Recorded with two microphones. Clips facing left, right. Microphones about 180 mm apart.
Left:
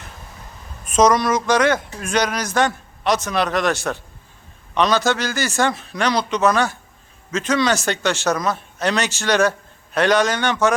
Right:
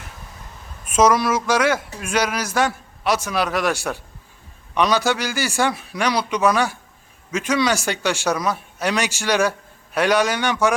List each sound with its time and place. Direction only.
0.9 s speech: 5° right (ahead or behind)